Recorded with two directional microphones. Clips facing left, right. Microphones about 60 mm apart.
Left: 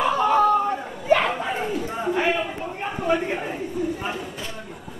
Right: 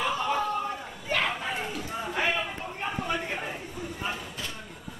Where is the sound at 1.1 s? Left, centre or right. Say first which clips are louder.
Left 8 dB; centre.